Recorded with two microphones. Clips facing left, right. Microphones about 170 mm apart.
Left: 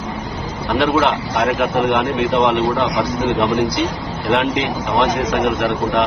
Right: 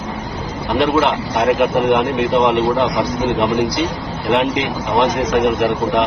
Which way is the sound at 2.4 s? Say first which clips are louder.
Right 1 dB; 10° right (ahead or behind).